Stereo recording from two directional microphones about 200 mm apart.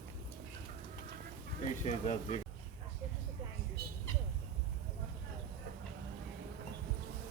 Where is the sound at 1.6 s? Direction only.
35° left (ahead or behind).